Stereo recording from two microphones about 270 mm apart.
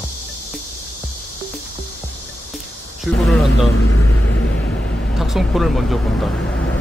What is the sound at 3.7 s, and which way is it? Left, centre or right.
Speech, left.